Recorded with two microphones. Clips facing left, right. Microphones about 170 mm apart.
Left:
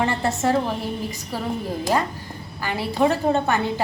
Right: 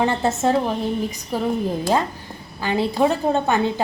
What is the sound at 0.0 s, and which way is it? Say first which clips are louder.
A woman's voice: right 2 dB; 20° right (ahead or behind).